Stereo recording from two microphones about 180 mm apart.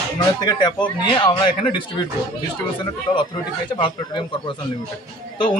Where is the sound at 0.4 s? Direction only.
25° left (ahead or behind).